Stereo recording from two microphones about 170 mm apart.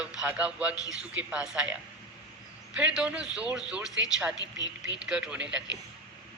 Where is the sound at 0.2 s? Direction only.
5° right (ahead or behind).